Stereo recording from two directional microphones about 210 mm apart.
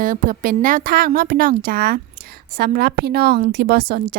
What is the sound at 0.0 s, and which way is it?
A woman's voice, 40° right (ahead or behind).